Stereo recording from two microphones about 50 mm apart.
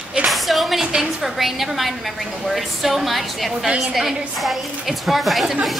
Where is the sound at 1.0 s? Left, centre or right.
Centre.